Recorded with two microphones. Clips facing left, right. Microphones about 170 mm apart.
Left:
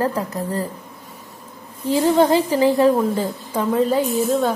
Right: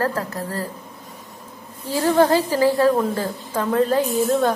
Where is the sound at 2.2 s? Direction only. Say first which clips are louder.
Right 2 dB; 15° left (ahead or behind).